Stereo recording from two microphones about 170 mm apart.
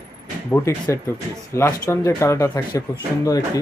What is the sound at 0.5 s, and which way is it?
Speech, 15° left (ahead or behind).